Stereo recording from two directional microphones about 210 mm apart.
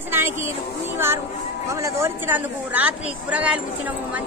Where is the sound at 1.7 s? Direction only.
15° right (ahead or behind).